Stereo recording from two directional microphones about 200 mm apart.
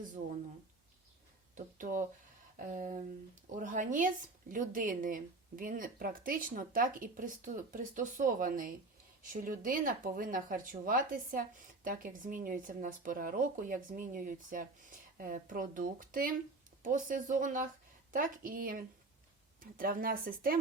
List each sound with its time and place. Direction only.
1.5 s speech: 40° right (ahead or behind)